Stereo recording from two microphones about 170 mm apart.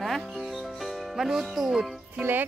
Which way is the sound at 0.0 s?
Centre (ahead or behind).